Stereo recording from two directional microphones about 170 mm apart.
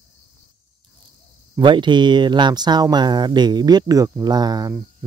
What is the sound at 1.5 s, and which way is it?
Speech, 25° right (ahead or behind).